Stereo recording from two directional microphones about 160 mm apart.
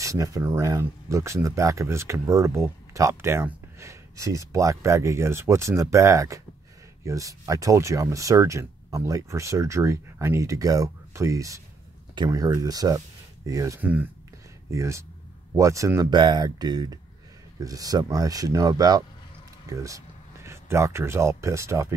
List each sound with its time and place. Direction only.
0.0 s speech: 20° right (ahead or behind)